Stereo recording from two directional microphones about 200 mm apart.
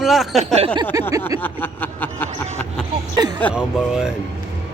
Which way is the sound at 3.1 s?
20° right (ahead or behind).